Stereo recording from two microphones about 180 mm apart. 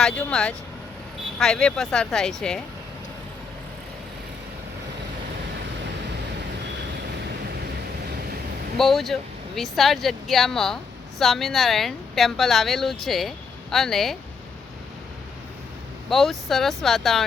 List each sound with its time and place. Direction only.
0.0 s a woman's voice: 5° left (ahead or behind)
8.8 s a woman's voice: centre (ahead or behind)
16.0 s a woman's voice: centre (ahead or behind)